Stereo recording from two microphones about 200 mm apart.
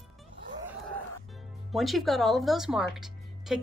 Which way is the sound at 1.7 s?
Centre (ahead or behind).